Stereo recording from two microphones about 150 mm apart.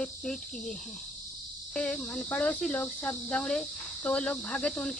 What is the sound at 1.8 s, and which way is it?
Speech, 5° left (ahead or behind).